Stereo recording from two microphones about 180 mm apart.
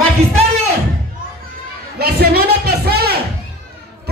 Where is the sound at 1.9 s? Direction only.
60° right (ahead or behind).